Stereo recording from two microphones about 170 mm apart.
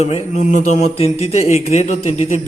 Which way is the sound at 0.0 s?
45° left (ahead or behind).